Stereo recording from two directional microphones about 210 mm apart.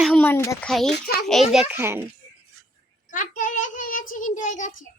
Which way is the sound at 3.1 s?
40° left (ahead or behind).